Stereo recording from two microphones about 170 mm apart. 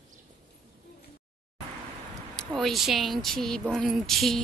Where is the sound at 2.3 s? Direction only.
Centre (ahead or behind).